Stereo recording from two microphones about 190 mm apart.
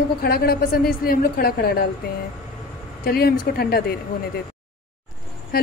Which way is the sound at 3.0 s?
55° left (ahead or behind).